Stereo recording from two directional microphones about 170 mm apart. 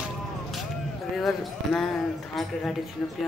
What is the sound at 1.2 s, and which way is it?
Speech, centre (ahead or behind).